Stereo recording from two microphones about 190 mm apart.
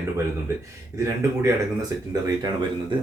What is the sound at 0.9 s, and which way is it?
Speech, 15° right (ahead or behind).